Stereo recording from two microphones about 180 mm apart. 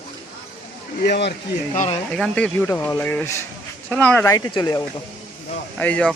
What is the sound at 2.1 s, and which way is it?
Speech, 5° left (ahead or behind).